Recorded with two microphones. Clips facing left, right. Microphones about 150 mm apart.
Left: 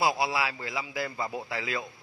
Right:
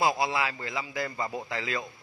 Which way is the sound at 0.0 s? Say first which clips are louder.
Even; 5° left (ahead or behind).